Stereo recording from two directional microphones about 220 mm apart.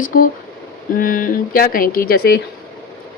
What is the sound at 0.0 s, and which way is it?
A woman's voice, 40° left (ahead or behind).